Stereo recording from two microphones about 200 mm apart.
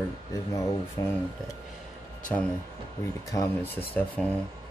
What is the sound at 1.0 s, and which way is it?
Speech, 15° left (ahead or behind).